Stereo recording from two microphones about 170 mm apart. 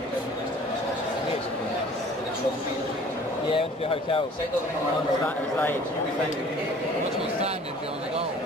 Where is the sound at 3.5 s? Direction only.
35° left (ahead or behind).